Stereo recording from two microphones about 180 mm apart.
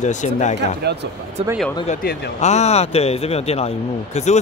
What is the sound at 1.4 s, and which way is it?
Speech, 35° right (ahead or behind).